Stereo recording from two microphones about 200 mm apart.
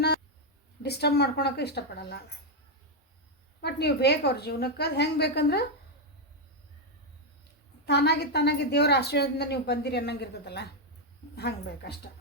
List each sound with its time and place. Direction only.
0.8 s a woman's voice: 55° left (ahead or behind)
3.6 s a woman's voice: 55° left (ahead or behind)
7.9 s a woman's voice: 55° left (ahead or behind)